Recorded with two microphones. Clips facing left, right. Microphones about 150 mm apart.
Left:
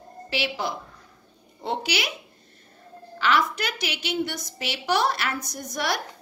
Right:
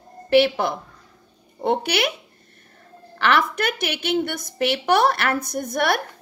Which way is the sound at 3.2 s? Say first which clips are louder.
Right 3 dB; 60° right (ahead or behind).